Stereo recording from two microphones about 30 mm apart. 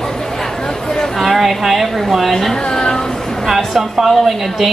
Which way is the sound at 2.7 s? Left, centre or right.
Left.